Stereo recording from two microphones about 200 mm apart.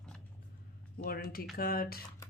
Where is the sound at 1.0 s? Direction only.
50° left (ahead or behind).